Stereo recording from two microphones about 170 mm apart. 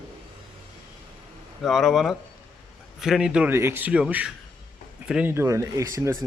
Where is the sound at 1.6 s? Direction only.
Centre (ahead or behind).